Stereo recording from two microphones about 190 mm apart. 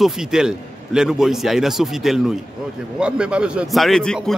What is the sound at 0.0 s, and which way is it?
A man's voice, centre (ahead or behind).